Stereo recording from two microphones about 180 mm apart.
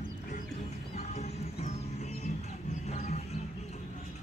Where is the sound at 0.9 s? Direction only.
35° left (ahead or behind).